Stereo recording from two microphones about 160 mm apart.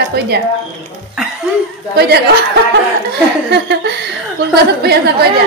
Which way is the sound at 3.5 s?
90° right.